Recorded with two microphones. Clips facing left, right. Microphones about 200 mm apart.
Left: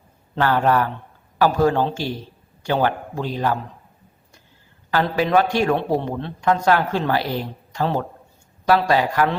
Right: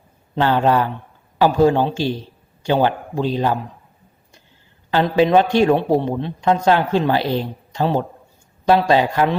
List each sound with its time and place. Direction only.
0.3 s a man's voice: 20° right (ahead or behind)
4.9 s a man's voice: 25° right (ahead or behind)